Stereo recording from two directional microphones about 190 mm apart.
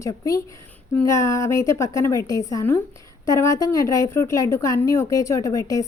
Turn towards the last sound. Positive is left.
turn(degrees=20)  # may be behind; listen again after turning